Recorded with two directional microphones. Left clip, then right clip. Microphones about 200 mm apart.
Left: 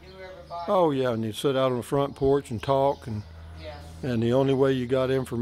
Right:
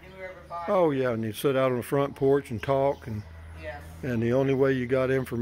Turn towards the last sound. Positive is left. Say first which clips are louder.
# left 1 dB
turn(degrees=10)  # may be behind; listen again after turning